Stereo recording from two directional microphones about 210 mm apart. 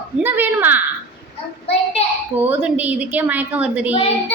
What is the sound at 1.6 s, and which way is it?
Child singing, 30° left (ahead or behind).